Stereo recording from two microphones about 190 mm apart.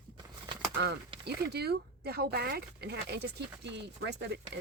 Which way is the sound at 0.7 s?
60° right (ahead or behind).